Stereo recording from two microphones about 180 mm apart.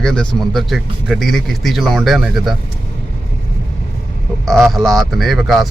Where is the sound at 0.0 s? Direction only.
5° left (ahead or behind).